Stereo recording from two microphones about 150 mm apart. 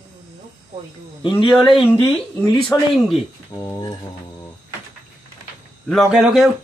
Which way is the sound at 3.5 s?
20° left (ahead or behind).